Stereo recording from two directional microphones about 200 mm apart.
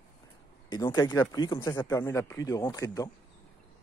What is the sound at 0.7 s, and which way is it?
Speech, 20° left (ahead or behind).